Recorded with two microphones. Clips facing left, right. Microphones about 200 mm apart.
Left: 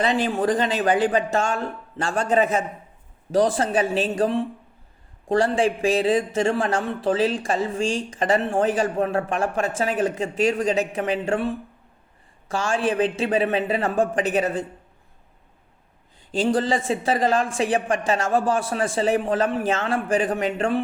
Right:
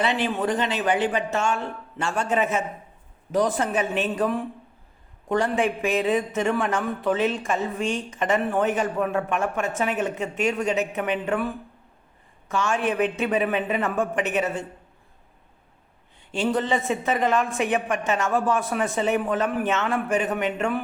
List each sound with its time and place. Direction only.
0.0 s a man's voice: 40° left (ahead or behind)
16.3 s a man's voice: 35° left (ahead or behind)